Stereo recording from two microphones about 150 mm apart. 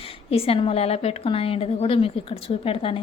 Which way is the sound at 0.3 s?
40° left (ahead or behind).